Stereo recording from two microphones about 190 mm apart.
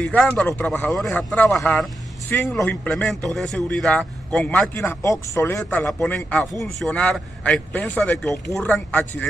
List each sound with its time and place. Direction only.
0.0 s speech: 5° left (ahead or behind)